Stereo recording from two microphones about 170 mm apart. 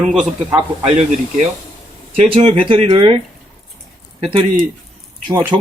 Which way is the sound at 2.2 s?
35° right (ahead or behind).